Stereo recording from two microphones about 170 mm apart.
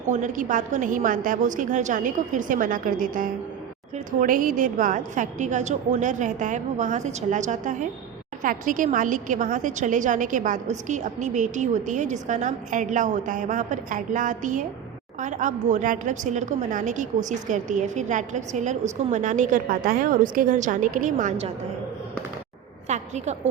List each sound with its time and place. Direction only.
0.1 s a woman's voice: 45° right (ahead or behind)
22.9 s a woman's voice: 40° right (ahead or behind)